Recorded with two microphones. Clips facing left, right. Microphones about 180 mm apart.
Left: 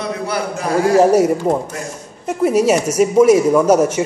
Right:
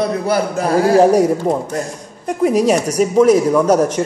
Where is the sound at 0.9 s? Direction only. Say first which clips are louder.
Left 1 dB; 5° left (ahead or behind).